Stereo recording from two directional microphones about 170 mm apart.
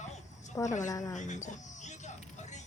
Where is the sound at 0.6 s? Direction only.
20° left (ahead or behind).